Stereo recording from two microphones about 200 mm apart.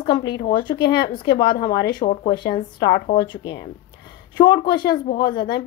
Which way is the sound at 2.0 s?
30° left (ahead or behind).